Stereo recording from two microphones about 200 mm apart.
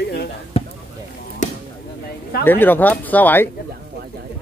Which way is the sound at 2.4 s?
10° left (ahead or behind).